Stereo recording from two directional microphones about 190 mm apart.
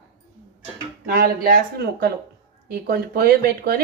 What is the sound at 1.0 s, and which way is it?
Speech, 50° right (ahead or behind).